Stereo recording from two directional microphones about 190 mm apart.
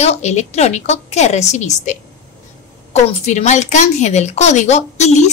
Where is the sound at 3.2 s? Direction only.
40° left (ahead or behind).